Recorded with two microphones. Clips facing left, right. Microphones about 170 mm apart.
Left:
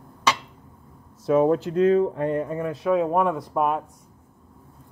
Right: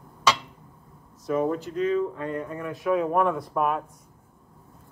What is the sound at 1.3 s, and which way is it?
Speech, 75° left (ahead or behind).